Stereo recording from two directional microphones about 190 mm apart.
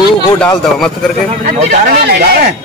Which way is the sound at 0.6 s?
Centre (ahead or behind).